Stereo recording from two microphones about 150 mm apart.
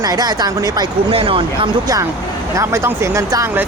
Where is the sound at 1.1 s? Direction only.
35° right (ahead or behind).